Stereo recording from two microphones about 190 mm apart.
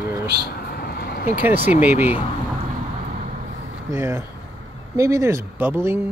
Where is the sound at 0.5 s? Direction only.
55° left (ahead or behind).